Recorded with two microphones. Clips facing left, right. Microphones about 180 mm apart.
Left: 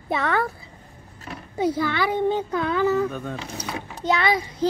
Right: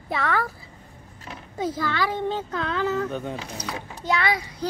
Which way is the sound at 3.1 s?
15° right (ahead or behind).